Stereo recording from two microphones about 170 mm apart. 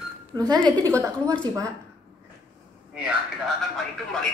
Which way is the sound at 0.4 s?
25° right (ahead or behind).